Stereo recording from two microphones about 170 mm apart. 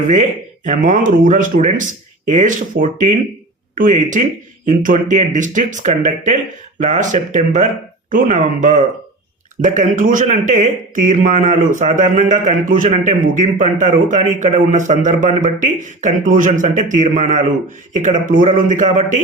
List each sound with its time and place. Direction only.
0.1 s speech: 45° right (ahead or behind)